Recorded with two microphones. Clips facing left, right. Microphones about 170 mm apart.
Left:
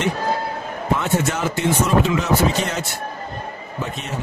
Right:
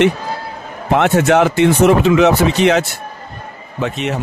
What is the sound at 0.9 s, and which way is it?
Speech, 75° right (ahead or behind).